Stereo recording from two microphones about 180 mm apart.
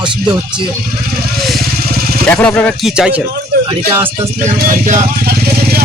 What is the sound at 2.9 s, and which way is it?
Speech, 5° right (ahead or behind).